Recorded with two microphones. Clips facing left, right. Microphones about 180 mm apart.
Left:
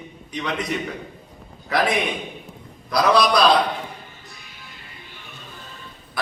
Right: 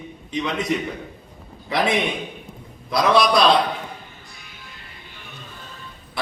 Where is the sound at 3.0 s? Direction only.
Centre (ahead or behind).